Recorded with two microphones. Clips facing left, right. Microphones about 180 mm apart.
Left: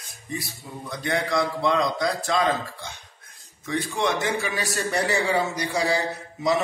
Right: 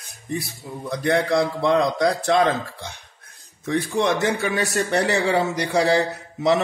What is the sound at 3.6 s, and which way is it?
A man's voice, 65° right (ahead or behind).